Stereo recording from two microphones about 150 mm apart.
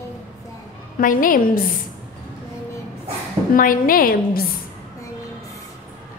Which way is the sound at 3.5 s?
70° left (ahead or behind).